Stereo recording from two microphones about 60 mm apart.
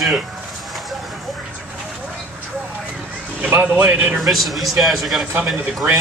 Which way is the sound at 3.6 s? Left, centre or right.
Right.